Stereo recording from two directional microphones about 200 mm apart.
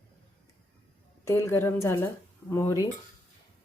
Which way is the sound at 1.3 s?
15° left (ahead or behind).